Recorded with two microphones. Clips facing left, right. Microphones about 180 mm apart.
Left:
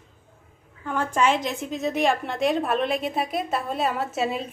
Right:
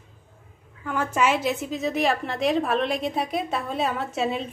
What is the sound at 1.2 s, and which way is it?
A woman's voice, 5° right (ahead or behind).